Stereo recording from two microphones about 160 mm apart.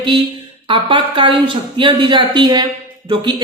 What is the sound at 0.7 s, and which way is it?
A woman's voice, 30° right (ahead or behind).